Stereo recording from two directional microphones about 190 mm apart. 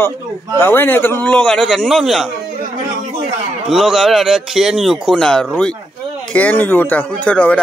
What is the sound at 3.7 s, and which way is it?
A man's voice, centre (ahead or behind).